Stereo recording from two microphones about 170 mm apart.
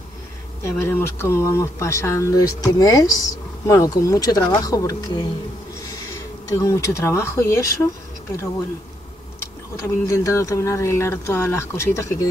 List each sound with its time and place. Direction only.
0.7 s speech: 15° left (ahead or behind)
6.5 s speech: 20° left (ahead or behind)
9.8 s speech: 20° left (ahead or behind)